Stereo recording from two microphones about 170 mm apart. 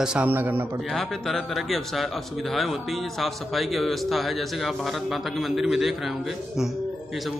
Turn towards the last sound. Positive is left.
turn(degrees=0)  # may be behind; listen again after turning